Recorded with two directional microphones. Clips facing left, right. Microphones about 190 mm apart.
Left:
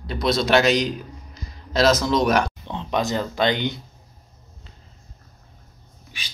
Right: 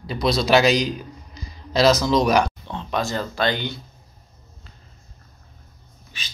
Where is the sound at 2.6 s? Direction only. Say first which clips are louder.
Left 2 dB; 20° left (ahead or behind).